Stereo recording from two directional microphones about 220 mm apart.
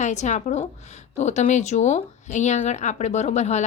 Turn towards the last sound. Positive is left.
turn(degrees=30)  # may be behind; listen again after turning